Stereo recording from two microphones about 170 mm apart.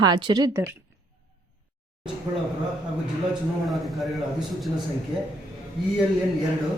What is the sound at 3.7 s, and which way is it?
Speech, centre (ahead or behind).